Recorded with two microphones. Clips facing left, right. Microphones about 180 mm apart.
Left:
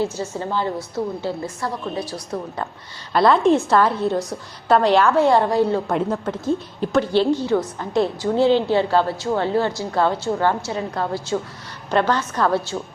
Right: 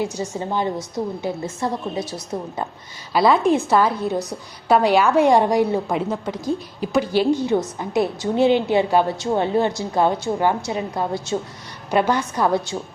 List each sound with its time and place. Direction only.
0.0 s a woman's voice: 15° right (ahead or behind)
3.1 s a woman's voice: 5° right (ahead or behind)